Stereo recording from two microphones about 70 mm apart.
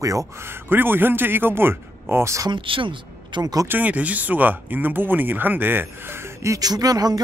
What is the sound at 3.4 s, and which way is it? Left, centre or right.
Speech, right.